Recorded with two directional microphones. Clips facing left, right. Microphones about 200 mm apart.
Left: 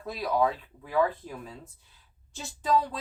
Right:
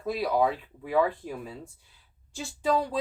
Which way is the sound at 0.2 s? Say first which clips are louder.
Even; 10° right (ahead or behind).